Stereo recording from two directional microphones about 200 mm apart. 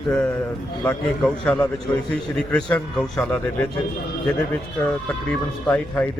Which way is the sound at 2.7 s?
5° left (ahead or behind).